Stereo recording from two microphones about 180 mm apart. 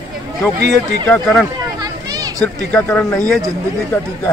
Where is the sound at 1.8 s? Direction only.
20° right (ahead or behind).